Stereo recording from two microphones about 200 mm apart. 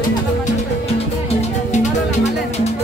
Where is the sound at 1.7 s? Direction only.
35° left (ahead or behind).